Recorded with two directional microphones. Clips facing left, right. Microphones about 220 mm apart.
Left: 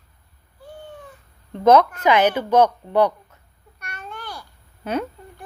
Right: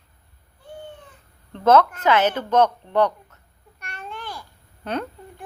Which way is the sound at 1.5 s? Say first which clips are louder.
Left 2 dB; 10° left (ahead or behind).